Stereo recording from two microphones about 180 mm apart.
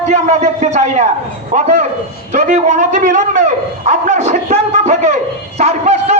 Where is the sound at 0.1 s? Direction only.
40° right (ahead or behind).